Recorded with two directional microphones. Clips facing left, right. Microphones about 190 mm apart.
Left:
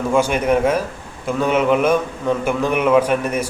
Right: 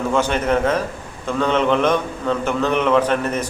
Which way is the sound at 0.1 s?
10° left (ahead or behind).